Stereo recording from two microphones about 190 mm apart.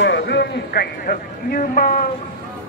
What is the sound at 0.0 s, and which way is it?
A man's voice, 65° left (ahead or behind).